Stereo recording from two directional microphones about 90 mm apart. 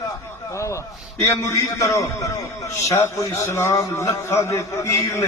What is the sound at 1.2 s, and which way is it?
A man's voice, 35° left (ahead or behind).